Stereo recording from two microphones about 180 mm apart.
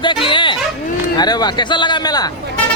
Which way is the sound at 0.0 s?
25° left (ahead or behind).